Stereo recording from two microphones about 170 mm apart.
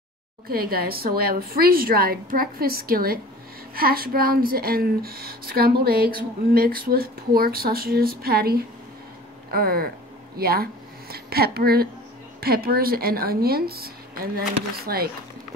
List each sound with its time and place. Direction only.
0.5 s speech: 60° right (ahead or behind)